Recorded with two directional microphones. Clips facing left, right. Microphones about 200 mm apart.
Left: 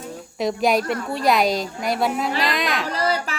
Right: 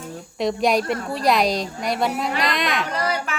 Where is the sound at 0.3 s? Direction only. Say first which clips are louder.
Even; centre (ahead or behind).